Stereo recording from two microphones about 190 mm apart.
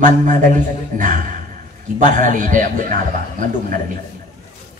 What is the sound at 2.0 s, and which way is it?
Speech, 45° right (ahead or behind).